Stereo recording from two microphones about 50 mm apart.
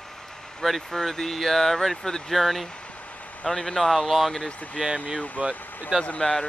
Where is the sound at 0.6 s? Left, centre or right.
Centre.